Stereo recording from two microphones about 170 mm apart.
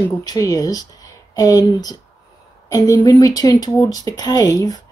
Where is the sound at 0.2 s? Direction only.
20° left (ahead or behind).